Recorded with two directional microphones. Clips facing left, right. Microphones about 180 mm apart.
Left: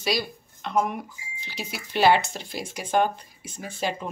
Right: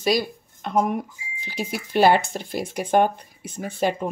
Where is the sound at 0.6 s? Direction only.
45° right (ahead or behind).